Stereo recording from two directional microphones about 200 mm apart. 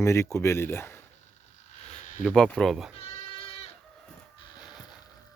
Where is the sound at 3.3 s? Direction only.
30° left (ahead or behind).